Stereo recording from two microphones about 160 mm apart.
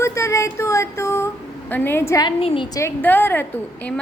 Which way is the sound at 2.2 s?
35° left (ahead or behind).